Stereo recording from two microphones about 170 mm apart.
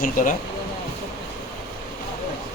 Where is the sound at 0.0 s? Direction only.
50° left (ahead or behind).